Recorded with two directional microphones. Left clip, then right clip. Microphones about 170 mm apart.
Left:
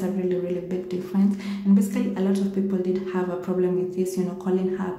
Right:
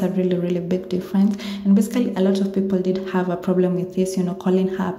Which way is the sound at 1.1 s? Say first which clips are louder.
Right 2 dB; 30° right (ahead or behind).